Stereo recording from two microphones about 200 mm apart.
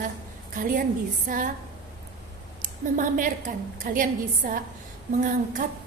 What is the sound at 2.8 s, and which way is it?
A woman's voice, 40° right (ahead or behind).